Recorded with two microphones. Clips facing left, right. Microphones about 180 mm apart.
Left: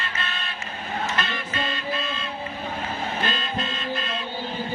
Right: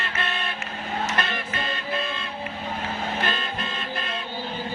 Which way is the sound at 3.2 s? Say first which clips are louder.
Even; 55° right (ahead or behind).